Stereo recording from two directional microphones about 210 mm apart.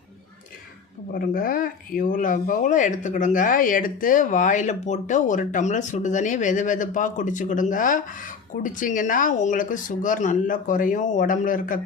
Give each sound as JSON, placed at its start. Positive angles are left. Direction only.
{"t": 1.1, "sound": "speech", "side_deg": 45}